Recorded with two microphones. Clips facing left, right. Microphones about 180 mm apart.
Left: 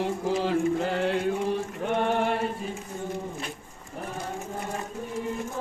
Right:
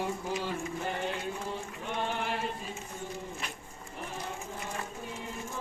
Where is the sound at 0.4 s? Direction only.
85° left; by 2.3 s 55° left (ahead or behind).